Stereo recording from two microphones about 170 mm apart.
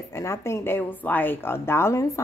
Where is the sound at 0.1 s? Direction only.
15° left (ahead or behind).